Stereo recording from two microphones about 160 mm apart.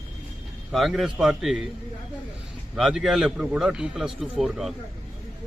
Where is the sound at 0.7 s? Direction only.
Centre (ahead or behind).